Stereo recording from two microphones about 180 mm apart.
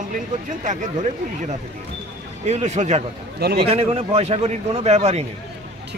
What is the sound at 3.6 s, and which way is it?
Speech, 35° right (ahead or behind).